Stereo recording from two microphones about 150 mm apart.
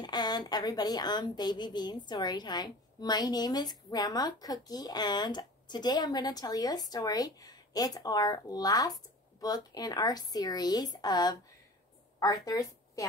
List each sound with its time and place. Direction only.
0.0 s a woman's voice: 30° left (ahead or behind)
12.4 s a woman's voice: 20° left (ahead or behind)